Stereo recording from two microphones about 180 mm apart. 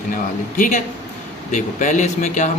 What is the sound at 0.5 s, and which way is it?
Speech, 45° left (ahead or behind).